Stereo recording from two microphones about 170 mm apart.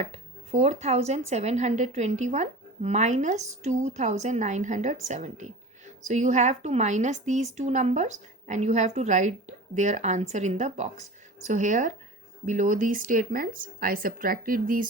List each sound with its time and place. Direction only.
0.0 s speech: 40° right (ahead or behind); by 14.8 s 55° right (ahead or behind)